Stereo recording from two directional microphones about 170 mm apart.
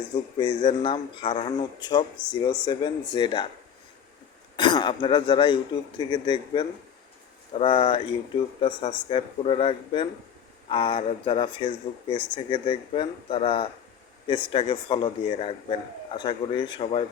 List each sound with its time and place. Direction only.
0.3 s a man's voice: 30° left (ahead or behind)
4.5 s a man's voice: 25° left (ahead or behind)